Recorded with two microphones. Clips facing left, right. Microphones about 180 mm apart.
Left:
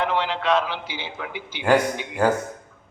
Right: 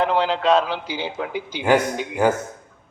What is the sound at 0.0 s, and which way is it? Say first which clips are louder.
A man's voice: right 4 dB; 40° right (ahead or behind).